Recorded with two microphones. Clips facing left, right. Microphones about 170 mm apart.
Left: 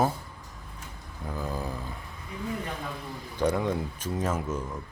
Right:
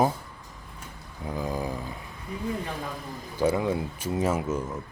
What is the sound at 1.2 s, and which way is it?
Speech, 15° right (ahead or behind).